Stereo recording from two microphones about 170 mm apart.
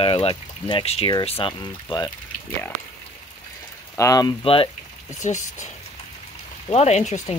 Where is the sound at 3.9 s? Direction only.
20° left (ahead or behind).